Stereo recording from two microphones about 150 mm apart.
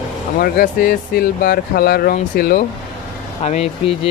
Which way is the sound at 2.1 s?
75° left (ahead or behind).